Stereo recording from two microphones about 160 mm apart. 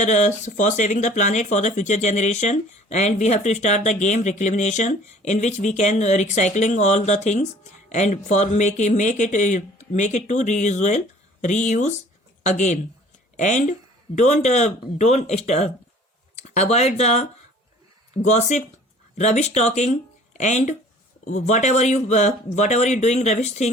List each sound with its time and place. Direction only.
0.0 s speech: 45° left (ahead or behind)